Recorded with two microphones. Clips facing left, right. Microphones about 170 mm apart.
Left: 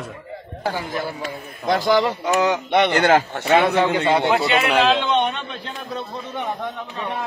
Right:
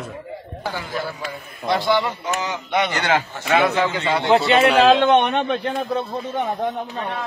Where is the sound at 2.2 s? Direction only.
65° left (ahead or behind).